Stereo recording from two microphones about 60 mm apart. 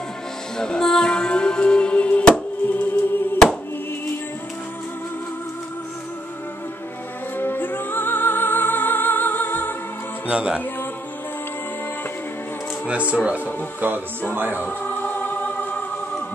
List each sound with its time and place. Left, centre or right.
0.6 s music: centre
2.7 s music: left
7.3 s music: left
10.3 s music: centre
13.1 s speech: centre
13.7 s music: right
14.6 s music: left